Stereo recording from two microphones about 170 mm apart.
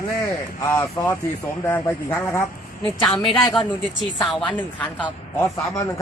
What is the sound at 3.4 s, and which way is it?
Speech, 25° left (ahead or behind).